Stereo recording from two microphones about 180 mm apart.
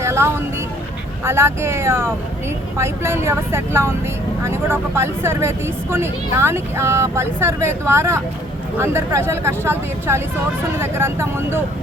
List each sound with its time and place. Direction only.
0.0 s vehicle: 15° right (ahead or behind)
1.2 s speech: 15° right (ahead or behind)